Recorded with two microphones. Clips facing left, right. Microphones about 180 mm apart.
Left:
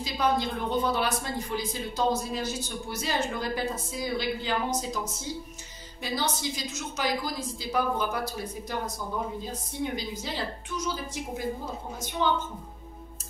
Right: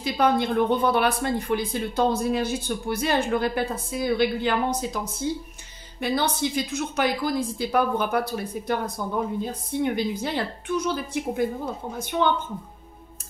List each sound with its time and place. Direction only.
0.0 s a woman's voice: 60° right (ahead or behind)